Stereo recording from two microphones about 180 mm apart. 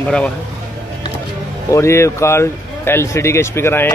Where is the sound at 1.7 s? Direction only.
15° left (ahead or behind).